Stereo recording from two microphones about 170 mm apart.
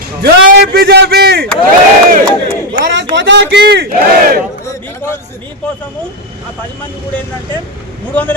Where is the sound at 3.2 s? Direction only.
90° right; by 4.4 s 55° right (ahead or behind).